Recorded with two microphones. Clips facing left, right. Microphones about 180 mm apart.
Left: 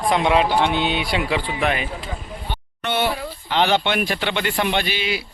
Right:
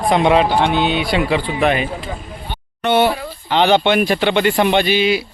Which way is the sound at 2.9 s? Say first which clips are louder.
Right 7 dB; 75° right (ahead or behind).